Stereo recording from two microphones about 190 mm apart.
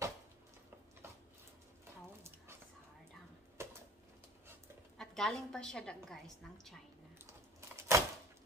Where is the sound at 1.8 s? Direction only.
10° right (ahead or behind).